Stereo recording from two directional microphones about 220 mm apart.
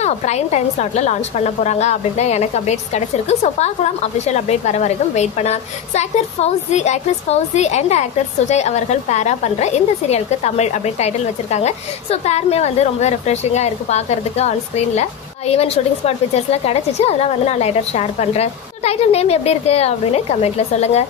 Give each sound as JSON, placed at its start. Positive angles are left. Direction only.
{"t": 0.0, "sound": "a woman's voice", "side_deg": 30}